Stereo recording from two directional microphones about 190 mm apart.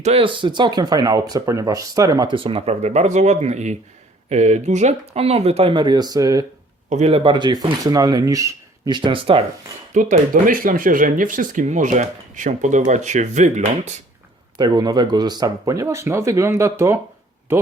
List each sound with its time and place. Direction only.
0.0 s speech: 30° right (ahead or behind)
6.9 s speech: 30° right (ahead or behind); by 9.0 s 15° right (ahead or behind)
9.0 s speech: 30° right (ahead or behind)
9.9 s speech: 40° right (ahead or behind)
14.6 s speech: 20° right (ahead or behind)